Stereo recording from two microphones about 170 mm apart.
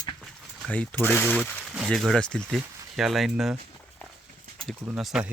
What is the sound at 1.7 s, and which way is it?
Speech, centre (ahead or behind).